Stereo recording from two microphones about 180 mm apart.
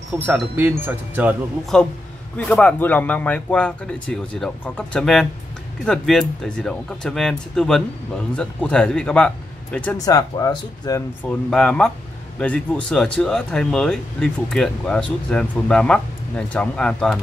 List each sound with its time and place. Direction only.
0.1 s speech: 10° right (ahead or behind)
1.7 s speech: 5° left (ahead or behind)
9.9 s speech: 20° left (ahead or behind)
11.2 s speech: 5° left (ahead or behind)